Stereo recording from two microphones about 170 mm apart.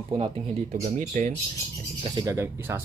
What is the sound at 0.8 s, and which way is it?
Speech, 45° right (ahead or behind).